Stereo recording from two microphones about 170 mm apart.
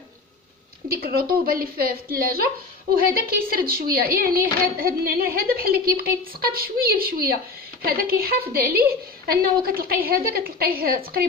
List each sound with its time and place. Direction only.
0.8 s speech: 60° right (ahead or behind)